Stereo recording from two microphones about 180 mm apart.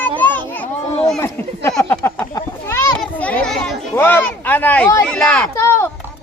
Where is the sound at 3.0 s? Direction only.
5° left (ahead or behind).